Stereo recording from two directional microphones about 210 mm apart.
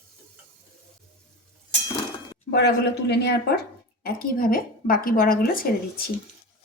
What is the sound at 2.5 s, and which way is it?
A woman's voice, 55° left (ahead or behind).